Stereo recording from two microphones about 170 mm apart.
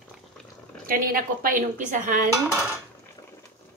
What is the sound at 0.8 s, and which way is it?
A woman's voice, 60° right (ahead or behind).